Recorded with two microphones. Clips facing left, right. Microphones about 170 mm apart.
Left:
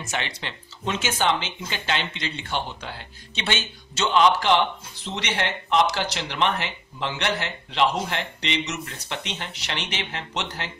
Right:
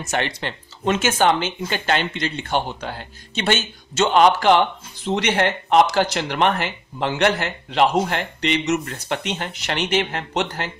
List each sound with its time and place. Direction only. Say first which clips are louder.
0.0 s speech: right 6 dB; 50° right (ahead or behind)